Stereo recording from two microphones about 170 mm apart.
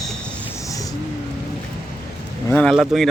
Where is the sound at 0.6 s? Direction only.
20° left (ahead or behind).